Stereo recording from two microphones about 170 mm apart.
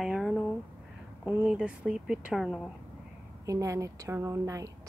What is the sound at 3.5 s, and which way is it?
A woman's voice, 20° right (ahead or behind).